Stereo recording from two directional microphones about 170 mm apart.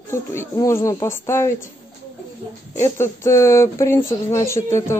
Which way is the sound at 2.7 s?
15° left (ahead or behind).